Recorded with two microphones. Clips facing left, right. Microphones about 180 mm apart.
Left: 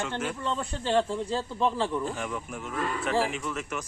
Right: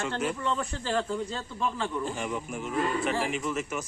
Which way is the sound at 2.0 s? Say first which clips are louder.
Even; centre (ahead or behind).